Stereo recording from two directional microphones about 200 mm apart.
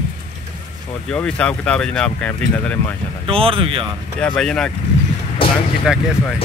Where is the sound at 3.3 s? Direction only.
25° right (ahead or behind).